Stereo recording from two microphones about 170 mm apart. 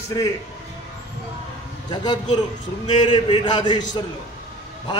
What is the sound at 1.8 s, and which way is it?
A man's voice, 25° left (ahead or behind).